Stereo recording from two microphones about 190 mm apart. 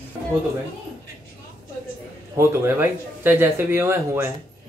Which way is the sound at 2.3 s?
15° right (ahead or behind).